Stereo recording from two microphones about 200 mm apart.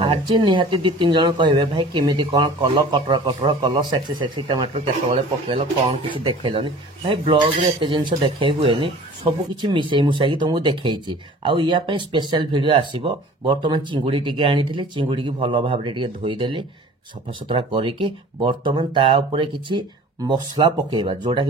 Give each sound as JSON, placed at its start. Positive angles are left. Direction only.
{"t": 0.0, "sound": "speech", "side_deg": -25}